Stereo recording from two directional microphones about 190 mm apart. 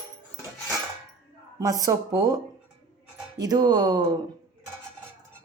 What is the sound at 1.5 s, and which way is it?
A woman's voice, 20° right (ahead or behind).